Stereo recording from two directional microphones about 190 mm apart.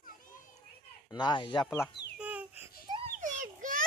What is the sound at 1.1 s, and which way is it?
Speech, 25° left (ahead or behind).